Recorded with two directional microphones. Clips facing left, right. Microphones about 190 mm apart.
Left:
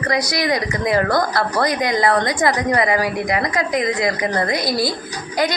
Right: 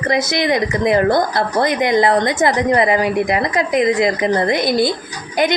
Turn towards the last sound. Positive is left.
turn(degrees=-25)  # may be behind; listen again after turning